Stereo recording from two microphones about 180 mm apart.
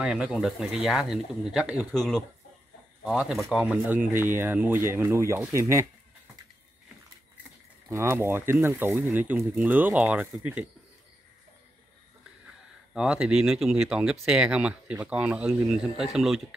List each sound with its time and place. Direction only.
0.0 s speech: 5° right (ahead or behind)
7.9 s speech: 15° right (ahead or behind)
12.9 s speech: 5° right (ahead or behind)